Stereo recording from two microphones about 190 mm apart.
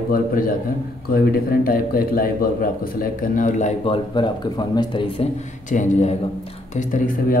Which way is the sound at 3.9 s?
25° left (ahead or behind).